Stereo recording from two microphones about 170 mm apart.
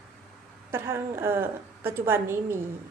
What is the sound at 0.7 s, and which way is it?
A woman's voice, 15° right (ahead or behind).